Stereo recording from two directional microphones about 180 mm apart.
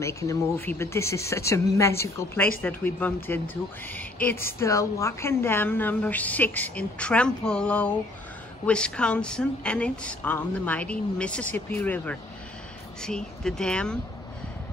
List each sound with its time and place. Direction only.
0.0 s a woman's voice: 15° left (ahead or behind)